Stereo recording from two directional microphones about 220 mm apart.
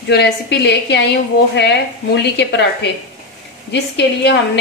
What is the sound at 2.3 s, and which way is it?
Speech, 50° left (ahead or behind).